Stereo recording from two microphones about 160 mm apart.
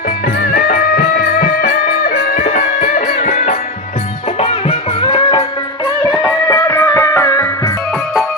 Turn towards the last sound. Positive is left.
turn(degrees=20)  # may be behind; listen again after turning